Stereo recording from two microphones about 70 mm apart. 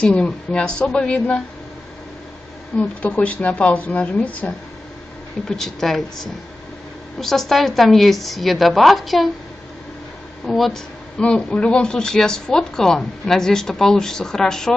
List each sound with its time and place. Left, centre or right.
0.0 s speech: centre
2.8 s speech: centre
5.5 s a woman's voice: centre
7.2 s a woman's voice: centre
10.4 s a woman's voice: centre
11.1 s speech: centre